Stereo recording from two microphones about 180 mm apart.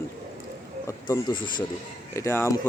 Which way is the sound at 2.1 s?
15° left (ahead or behind).